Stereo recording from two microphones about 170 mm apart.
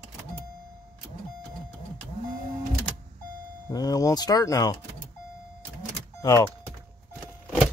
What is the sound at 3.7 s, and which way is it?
Speech, 20° left (ahead or behind).